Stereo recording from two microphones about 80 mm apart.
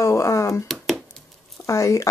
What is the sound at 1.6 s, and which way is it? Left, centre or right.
Speech, left.